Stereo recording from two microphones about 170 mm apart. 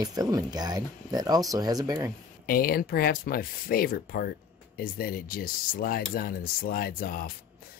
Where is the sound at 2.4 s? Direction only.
60° left (ahead or behind).